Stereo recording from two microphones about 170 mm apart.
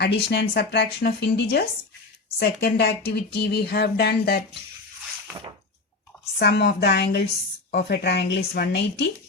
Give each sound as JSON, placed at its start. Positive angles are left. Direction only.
{"t": 0.0, "sound": "speech", "side_deg": 75}
{"t": 6.4, "sound": "speech", "side_deg": 75}